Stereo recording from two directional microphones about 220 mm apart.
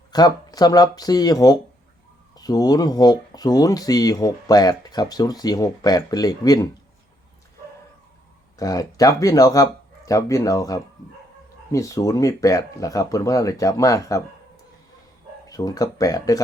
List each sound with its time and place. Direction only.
0.1 s speech: 20° left (ahead or behind)
8.5 s speech: 15° left (ahead or behind)